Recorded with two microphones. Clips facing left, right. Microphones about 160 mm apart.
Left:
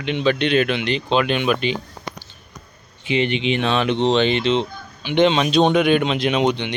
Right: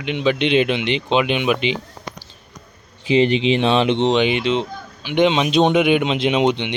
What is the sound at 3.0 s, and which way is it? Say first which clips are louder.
Speech: right 5 dB; 35° right (ahead or behind).